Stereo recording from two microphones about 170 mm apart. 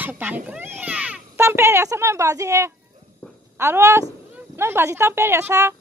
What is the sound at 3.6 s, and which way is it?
Speech, 15° right (ahead or behind).